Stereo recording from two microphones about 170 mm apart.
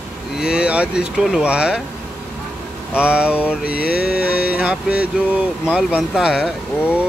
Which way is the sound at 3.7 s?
65° left (ahead or behind).